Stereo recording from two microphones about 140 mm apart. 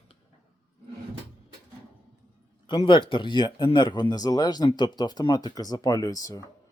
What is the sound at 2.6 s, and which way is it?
Speech, 35° left (ahead or behind).